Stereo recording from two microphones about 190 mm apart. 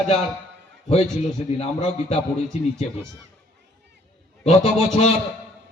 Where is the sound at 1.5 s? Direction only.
35° left (ahead or behind).